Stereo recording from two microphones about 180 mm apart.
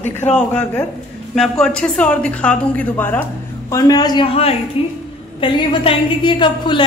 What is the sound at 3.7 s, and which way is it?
A woman's voice, 20° left (ahead or behind).